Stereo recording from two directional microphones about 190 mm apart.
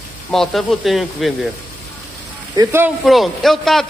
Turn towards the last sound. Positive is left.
turn(degrees=0)  # may be behind; listen again after turning